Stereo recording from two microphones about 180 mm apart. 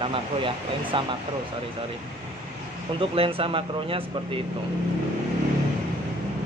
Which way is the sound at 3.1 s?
30° right (ahead or behind).